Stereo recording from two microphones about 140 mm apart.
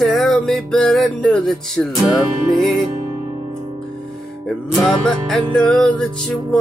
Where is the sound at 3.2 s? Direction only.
35° right (ahead or behind).